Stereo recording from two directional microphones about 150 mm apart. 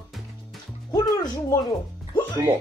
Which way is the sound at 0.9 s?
25° left (ahead or behind).